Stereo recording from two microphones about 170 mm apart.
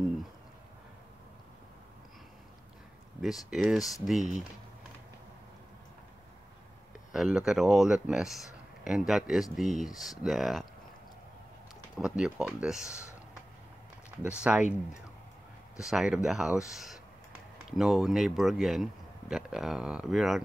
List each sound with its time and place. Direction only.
3.4 s speech: centre (ahead or behind)
7.1 s speech: 5° right (ahead or behind)
12.0 s speech: 5° right (ahead or behind)
14.2 s speech: 5° right (ahead or behind)
15.8 s speech: 5° right (ahead or behind)